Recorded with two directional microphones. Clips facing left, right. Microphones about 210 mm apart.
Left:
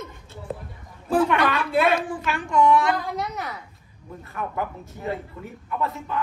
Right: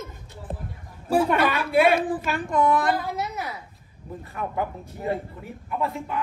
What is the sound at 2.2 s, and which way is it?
Speech, 50° right (ahead or behind).